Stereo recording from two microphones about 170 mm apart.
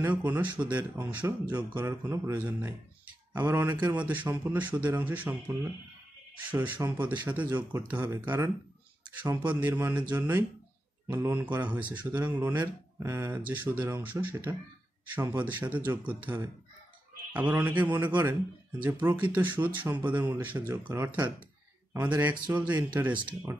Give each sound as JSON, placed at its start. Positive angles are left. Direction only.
{"t": 0.0, "sound": "speech", "side_deg": -10}
{"t": 7.4, "sound": "speech", "side_deg": -20}
{"t": 9.5, "sound": "speech", "side_deg": -10}
{"t": 22.5, "sound": "speech", "side_deg": -10}